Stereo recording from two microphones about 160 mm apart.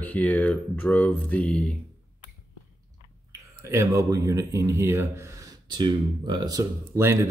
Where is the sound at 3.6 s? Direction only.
20° right (ahead or behind).